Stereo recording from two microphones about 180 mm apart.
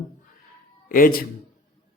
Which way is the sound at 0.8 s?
50° left (ahead or behind).